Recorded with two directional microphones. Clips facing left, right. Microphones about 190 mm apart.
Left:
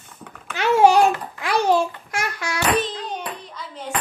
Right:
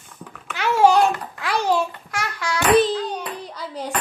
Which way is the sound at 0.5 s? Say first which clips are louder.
Left 1 dB; 20° left (ahead or behind).